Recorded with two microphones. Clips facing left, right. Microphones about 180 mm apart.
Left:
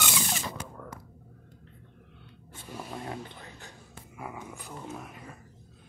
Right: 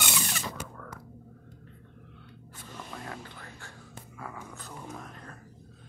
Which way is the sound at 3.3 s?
20° left (ahead or behind).